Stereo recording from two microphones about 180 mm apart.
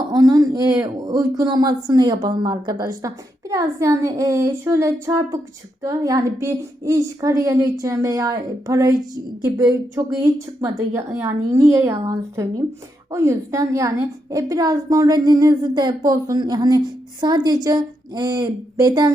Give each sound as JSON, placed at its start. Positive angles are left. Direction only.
{"t": 0.1, "sound": "a woman's voice", "side_deg": -20}